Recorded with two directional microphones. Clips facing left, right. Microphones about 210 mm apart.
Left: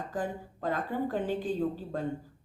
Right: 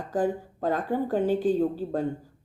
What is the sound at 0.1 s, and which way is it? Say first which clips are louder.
A woman's voice: right 12 dB; 45° right (ahead or behind).